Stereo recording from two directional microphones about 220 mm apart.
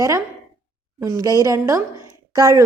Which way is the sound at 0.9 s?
15° right (ahead or behind).